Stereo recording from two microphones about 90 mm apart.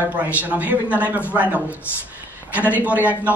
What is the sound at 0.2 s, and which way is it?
A man's voice, 20° right (ahead or behind).